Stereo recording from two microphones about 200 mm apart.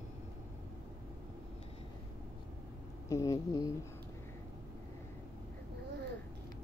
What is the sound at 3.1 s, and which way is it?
Speech, 15° left (ahead or behind).